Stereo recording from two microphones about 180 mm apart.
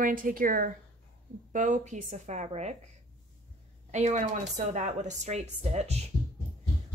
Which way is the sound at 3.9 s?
40° right (ahead or behind).